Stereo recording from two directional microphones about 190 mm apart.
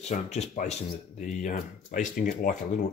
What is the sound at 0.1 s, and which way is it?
Speech, 35° left (ahead or behind).